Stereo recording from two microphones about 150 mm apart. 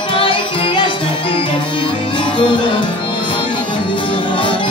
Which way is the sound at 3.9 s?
35° left (ahead or behind).